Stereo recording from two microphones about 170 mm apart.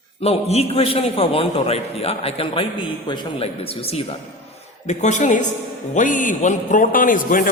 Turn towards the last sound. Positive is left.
turn(degrees=55)  # may be behind; listen again after turning